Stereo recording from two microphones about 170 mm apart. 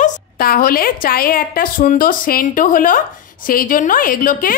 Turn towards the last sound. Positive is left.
turn(degrees=55)  # may be behind; listen again after turning